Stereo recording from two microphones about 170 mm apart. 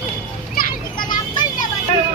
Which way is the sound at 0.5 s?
60° left (ahead or behind).